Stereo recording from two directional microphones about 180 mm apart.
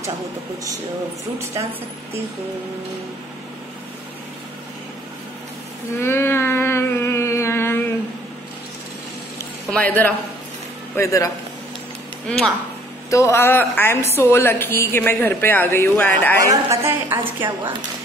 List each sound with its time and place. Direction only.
5.9 s a sound: 15° left (ahead or behind)
9.7 s a woman's voice: 10° left (ahead or behind)
12.3 s speech: centre (ahead or behind)
13.1 s a woman's voice: 15° left (ahead or behind)
16.4 s a woman's voice: 15° right (ahead or behind)